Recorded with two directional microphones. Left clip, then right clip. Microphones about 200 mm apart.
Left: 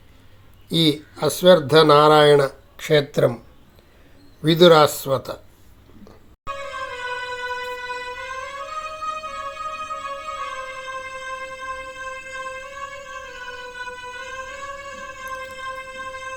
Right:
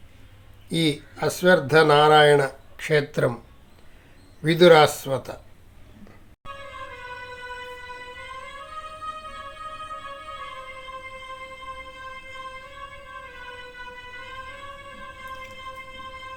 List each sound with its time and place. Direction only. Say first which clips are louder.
0.7 s speech: left 5 dB; 10° left (ahead or behind)
4.4 s speech: left 2 dB; 10° left (ahead or behind)
6.5 s music: left 8 dB; 45° left (ahead or behind)